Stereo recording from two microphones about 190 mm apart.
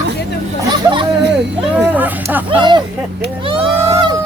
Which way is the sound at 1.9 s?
10° right (ahead or behind).